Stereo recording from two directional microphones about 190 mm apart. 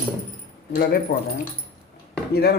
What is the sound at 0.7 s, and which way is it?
Speech, 50° left (ahead or behind).